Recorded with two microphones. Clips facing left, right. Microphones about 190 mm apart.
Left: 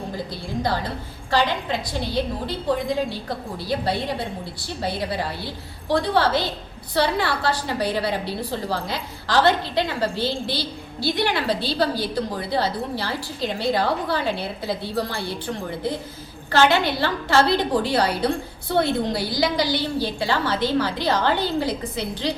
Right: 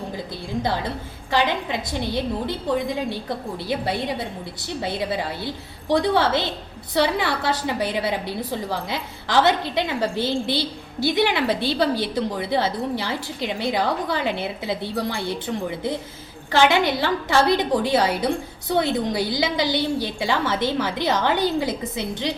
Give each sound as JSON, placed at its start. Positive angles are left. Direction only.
{"t": 1.3, "sound": "a woman's voice", "side_deg": -20}
{"t": 4.8, "sound": "a woman's voice", "side_deg": -20}
{"t": 16.5, "sound": "a woman's voice", "side_deg": -15}